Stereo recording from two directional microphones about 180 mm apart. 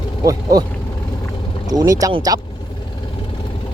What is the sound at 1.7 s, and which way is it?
Speech, 20° right (ahead or behind).